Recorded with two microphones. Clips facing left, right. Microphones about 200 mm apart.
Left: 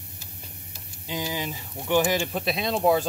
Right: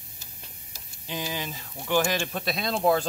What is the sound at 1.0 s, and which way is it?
Speech, 15° left (ahead or behind).